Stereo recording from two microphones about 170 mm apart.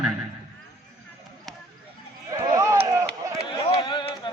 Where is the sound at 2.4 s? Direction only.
20° right (ahead or behind).